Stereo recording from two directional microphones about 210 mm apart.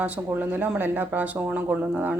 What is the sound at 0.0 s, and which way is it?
Speech, 10° right (ahead or behind).